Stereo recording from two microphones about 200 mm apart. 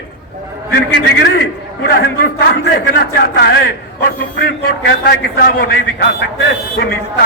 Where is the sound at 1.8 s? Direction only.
55° left (ahead or behind).